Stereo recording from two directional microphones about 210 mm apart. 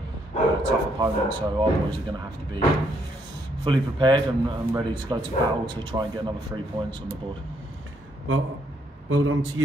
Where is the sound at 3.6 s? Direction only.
20° right (ahead or behind).